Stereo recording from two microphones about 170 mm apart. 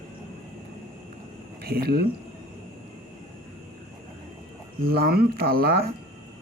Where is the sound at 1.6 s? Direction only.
65° right (ahead or behind).